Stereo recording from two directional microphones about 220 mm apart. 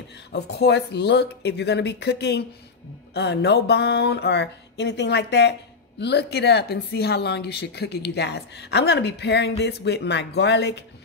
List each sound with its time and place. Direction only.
0.3 s speech: 50° left (ahead or behind)